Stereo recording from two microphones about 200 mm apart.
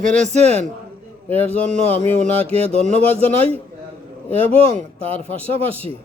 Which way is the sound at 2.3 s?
30° right (ahead or behind).